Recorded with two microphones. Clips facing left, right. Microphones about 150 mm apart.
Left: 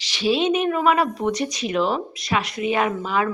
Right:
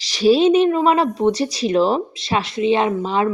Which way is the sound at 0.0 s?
40° right (ahead or behind).